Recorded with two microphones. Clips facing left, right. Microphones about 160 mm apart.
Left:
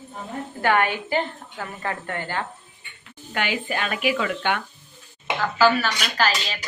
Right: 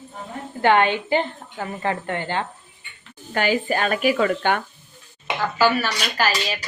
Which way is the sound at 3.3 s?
40° right (ahead or behind).